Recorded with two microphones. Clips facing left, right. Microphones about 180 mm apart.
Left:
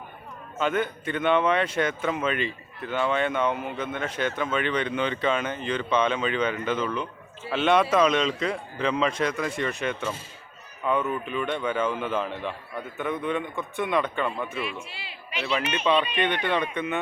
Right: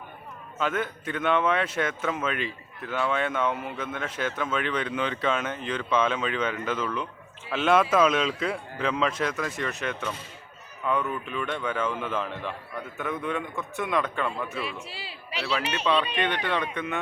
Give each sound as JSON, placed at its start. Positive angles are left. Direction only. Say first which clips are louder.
{"t": 0.6, "sound": "speech", "louder": "left 3 dB", "side_deg": 0}
{"t": 14.6, "sound": "a man's voice", "louder": "left 1 dB", "side_deg": -35}
{"t": 15.8, "sound": "speech", "louder": "left 2 dB", "side_deg": 5}